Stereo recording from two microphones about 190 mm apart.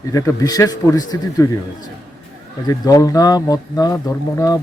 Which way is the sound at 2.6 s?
20° left (ahead or behind).